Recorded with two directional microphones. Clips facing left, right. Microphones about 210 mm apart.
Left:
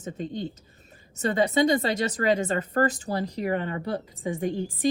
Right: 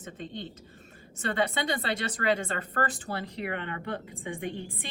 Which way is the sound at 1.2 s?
40° left (ahead or behind).